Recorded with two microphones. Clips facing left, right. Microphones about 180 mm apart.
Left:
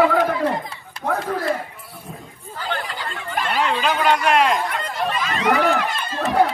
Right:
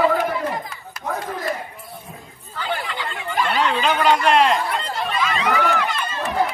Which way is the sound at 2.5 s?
40° left (ahead or behind).